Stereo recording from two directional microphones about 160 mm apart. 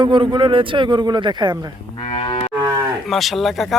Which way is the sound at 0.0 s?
30° right (ahead or behind).